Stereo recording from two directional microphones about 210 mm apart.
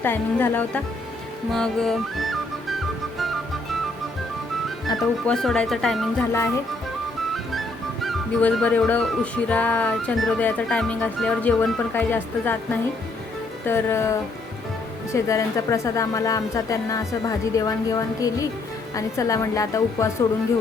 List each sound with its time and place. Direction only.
0.0 s a woman's voice: 10° left (ahead or behind)
1.5 s music: centre (ahead or behind)
4.9 s music: centre (ahead or behind)
8.0 s music: 5° left (ahead or behind)
13.7 s a woman's voice: 15° left (ahead or behind)